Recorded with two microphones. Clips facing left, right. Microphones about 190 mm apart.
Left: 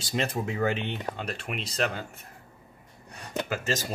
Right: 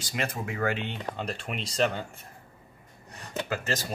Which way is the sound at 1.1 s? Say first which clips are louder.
Even; 5° left (ahead or behind).